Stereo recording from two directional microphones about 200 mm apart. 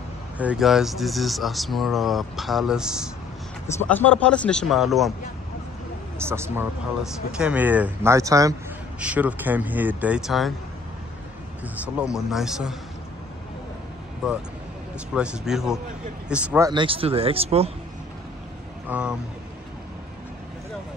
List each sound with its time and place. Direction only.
0.4 s speech: 5° right (ahead or behind)
3.6 s speech: 10° left (ahead or behind)
6.1 s speech: 15° right (ahead or behind)
11.6 s speech: 5° right (ahead or behind)
14.2 s speech: 5° right (ahead or behind); by 17.6 s 30° right (ahead or behind)
18.9 s speech: 5° right (ahead or behind)